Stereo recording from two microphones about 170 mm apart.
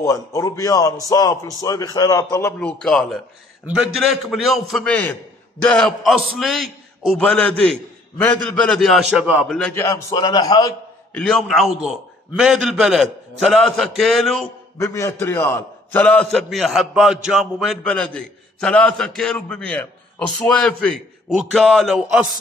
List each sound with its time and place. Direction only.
0.0 s a man's voice: 20° left (ahead or behind); by 9.5 s 10° right (ahead or behind)
9.5 s a man's voice: 10° left (ahead or behind)
9.8 s a man's voice: 25° left (ahead or behind)
11.1 s a man's voice: 5° left (ahead or behind)
14.8 s a man's voice: 15° left (ahead or behind); by 22.2 s 5° right (ahead or behind)